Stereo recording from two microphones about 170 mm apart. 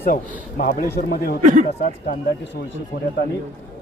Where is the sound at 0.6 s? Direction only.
50° left (ahead or behind).